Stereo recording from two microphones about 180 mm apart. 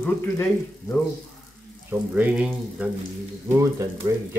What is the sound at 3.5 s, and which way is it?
Speech, 15° right (ahead or behind).